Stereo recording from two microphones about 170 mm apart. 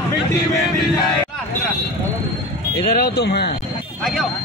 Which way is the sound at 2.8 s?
65° left (ahead or behind).